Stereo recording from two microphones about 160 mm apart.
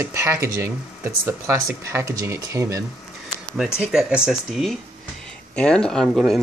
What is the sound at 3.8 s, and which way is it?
Speech, 5° right (ahead or behind).